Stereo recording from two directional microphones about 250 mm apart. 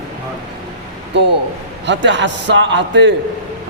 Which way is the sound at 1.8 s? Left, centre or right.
Right.